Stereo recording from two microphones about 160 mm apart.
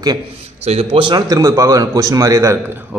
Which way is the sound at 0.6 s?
35° right (ahead or behind).